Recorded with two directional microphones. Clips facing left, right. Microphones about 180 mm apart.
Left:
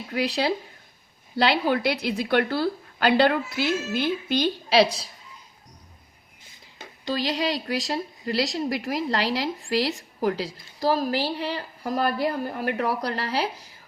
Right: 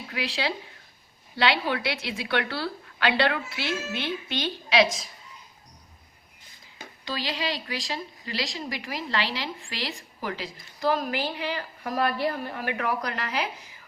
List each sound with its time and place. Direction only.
0.1 s a woman's voice: 40° left (ahead or behind)
7.0 s a woman's voice: 40° left (ahead or behind)